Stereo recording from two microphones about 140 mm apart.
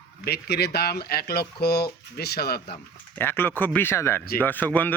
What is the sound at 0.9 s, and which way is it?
Speech, 90° left.